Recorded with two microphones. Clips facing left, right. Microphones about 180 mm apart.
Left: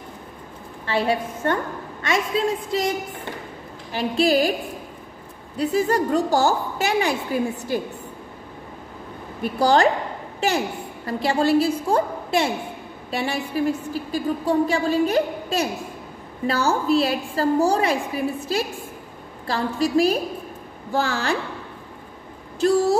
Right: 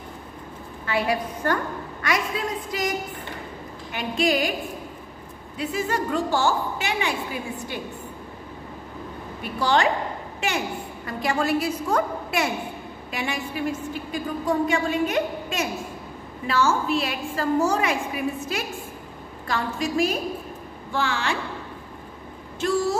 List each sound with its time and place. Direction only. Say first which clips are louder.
0.8 s a woman's voice: left 2 dB; 30° left (ahead or behind)
5.6 s a woman's voice: left 6 dB; 35° left (ahead or behind)
9.4 s a woman's voice: left 4 dB; 40° left (ahead or behind)
11.1 s a woman's voice: left 4 dB; 30° left (ahead or behind)
22.6 s a woman's voice: left 5 dB; 35° left (ahead or behind)